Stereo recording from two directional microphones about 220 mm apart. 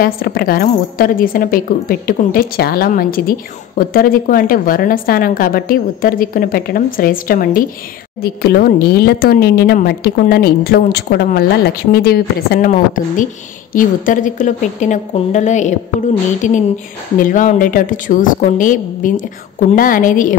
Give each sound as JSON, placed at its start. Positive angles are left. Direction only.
{"t": 0.0, "sound": "a woman's voice", "side_deg": 40}